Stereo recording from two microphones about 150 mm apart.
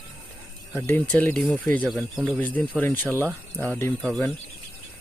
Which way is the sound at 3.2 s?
10° right (ahead or behind).